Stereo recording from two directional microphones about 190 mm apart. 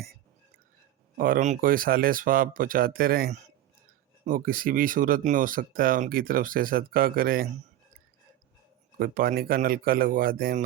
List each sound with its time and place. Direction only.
1.1 s speech: 50° right (ahead or behind)
9.0 s speech: 50° right (ahead or behind)